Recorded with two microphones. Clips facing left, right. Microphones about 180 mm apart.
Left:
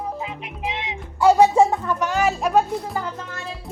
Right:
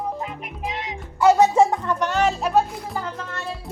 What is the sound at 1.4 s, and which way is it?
Music, 10° left (ahead or behind).